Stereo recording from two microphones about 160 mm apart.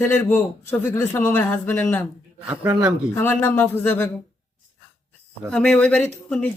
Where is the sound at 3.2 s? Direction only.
10° left (ahead or behind).